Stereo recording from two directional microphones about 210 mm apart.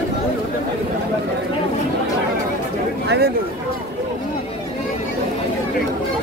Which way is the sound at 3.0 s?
50° right (ahead or behind).